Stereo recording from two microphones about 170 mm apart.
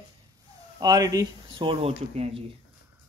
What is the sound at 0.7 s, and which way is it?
Speech, 20° right (ahead or behind).